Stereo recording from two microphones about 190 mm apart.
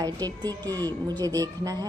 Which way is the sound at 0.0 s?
20° right (ahead or behind).